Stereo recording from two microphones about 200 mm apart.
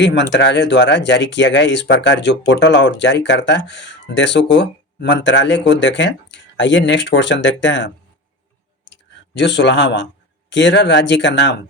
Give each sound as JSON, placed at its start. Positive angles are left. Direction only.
{"t": 0.0, "sound": "speech", "side_deg": 60}
{"t": 8.8, "sound": "clicking", "side_deg": 60}
{"t": 10.5, "sound": "speech", "side_deg": 60}